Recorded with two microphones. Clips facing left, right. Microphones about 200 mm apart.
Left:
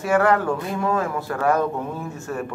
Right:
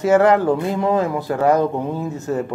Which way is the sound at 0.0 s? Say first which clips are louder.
Right 5 dB; 20° right (ahead or behind).